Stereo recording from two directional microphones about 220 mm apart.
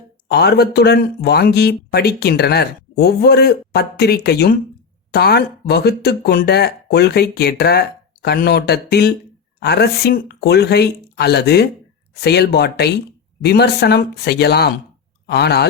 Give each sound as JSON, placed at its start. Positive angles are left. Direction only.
{"t": 0.3, "sound": "speech", "side_deg": 50}